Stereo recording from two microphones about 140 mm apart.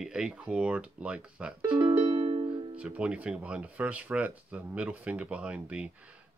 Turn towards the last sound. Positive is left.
turn(degrees=-10)  # may be behind; listen again after turning